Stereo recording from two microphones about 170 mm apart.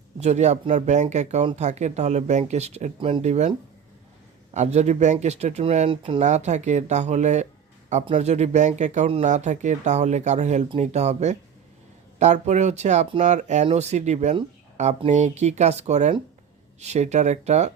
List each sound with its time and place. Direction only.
0.2 s speech: 40° right (ahead or behind)
4.5 s speech: 40° right (ahead or behind)
6.2 s speech: 45° right (ahead or behind)